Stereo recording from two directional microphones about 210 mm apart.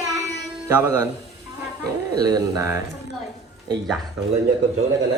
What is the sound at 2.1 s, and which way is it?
Speech, 15° right (ahead or behind).